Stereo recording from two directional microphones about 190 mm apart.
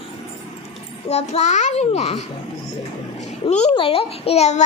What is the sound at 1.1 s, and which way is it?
A child's voice, 35° left (ahead or behind).